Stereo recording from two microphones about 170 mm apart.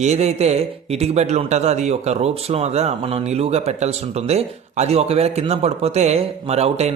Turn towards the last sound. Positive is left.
turn(degrees=-40)  # may be behind; listen again after turning